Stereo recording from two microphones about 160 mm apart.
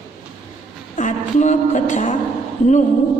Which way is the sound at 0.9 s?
50° left (ahead or behind).